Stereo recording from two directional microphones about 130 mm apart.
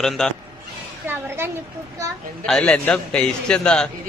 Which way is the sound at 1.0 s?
20° right (ahead or behind).